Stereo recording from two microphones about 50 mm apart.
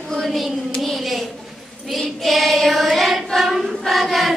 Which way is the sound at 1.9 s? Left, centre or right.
Centre.